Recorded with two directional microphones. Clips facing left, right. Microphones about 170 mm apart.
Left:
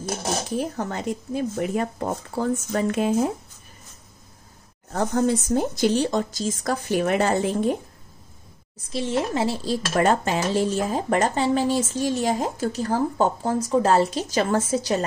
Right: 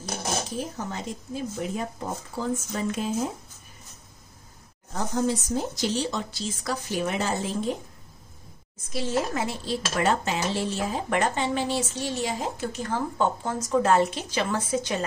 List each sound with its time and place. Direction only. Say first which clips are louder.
0.6 s speech: left 5 dB; 60° left (ahead or behind)
4.9 s speech: left 5 dB; 60° left (ahead or behind)
8.9 s speech: left 3 dB; 25° left (ahead or behind)
9.9 s speech: left 5 dB; 45° left (ahead or behind)